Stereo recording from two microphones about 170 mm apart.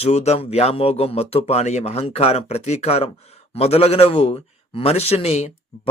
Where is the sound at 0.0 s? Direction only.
40° left (ahead or behind).